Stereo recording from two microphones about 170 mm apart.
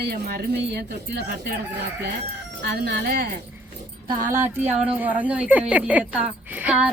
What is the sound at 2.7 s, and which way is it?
Speech, 70° right (ahead or behind).